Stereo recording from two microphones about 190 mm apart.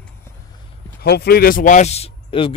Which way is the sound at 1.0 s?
55° left (ahead or behind).